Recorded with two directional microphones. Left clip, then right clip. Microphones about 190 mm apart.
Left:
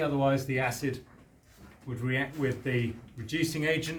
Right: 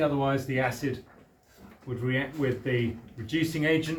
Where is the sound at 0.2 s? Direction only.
50° left (ahead or behind).